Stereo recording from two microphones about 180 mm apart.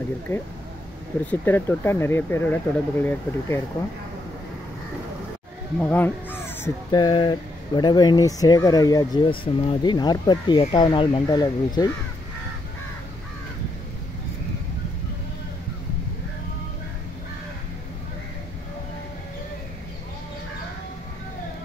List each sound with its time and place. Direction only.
1.2 s speech: 10° left (ahead or behind)
5.8 s speech: 10° left (ahead or behind)